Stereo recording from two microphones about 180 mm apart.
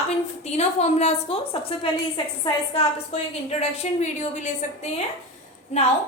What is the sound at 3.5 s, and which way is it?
A woman's voice, 35° left (ahead or behind).